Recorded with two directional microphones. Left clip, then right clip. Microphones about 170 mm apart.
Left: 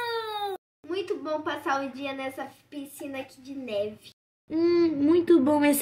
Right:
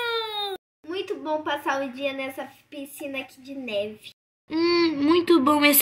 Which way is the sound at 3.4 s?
55° right (ahead or behind).